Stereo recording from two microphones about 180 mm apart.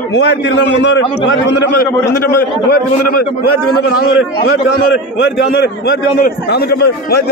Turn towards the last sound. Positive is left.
turn(degrees=65)  # may be behind; listen again after turning